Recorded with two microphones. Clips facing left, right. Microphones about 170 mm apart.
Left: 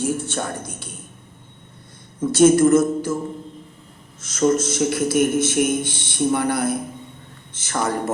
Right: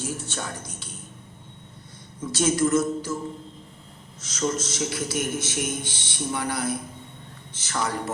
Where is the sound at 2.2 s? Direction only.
55° left (ahead or behind).